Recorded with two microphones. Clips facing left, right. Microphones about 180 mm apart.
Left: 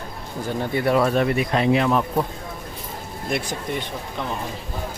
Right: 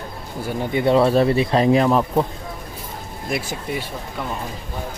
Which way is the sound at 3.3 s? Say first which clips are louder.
Even; 5° right (ahead or behind).